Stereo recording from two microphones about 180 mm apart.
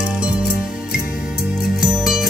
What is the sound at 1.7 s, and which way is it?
Music, centre (ahead or behind).